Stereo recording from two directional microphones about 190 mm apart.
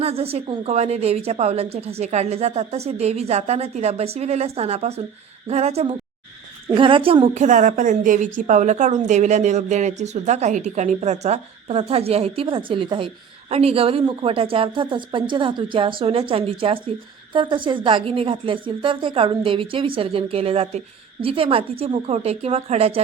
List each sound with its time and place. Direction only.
0.0 s a woman's voice: 30° right (ahead or behind)